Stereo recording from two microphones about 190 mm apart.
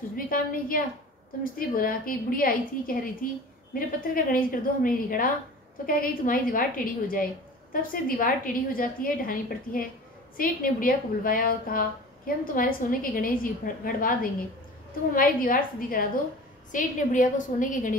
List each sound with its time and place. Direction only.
0.1 s a woman's voice: 50° left (ahead or behind)